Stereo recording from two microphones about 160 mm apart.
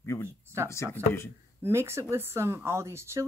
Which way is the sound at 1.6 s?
15° right (ahead or behind).